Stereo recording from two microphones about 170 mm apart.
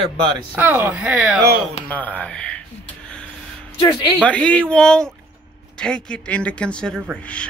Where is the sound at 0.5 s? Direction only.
10° right (ahead or behind).